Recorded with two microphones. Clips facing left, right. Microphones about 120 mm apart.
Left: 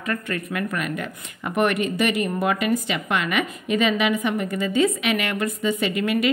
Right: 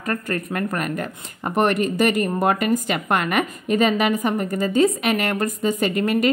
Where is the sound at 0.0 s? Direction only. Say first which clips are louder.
Right 2 dB; 40° right (ahead or behind).